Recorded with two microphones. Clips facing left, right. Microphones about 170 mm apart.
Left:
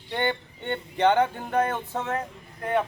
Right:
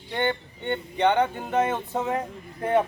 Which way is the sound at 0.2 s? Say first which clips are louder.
Right 2 dB; 5° left (ahead or behind).